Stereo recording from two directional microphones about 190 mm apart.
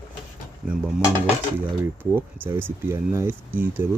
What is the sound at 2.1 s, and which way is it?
Speech, 10° right (ahead or behind).